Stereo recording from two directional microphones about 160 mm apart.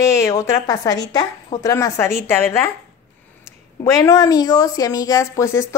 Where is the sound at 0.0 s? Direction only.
20° left (ahead or behind).